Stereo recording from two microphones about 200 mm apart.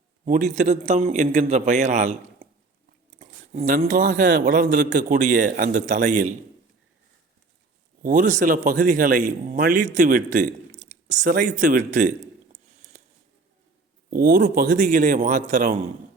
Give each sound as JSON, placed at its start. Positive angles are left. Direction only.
{"t": 0.3, "sound": "a man's voice", "side_deg": -35}
{"t": 8.0, "sound": "a man's voice", "side_deg": -40}
{"t": 14.1, "sound": "a man's voice", "side_deg": -45}